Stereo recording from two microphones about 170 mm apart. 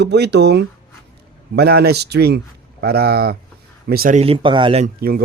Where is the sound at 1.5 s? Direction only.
70° right (ahead or behind).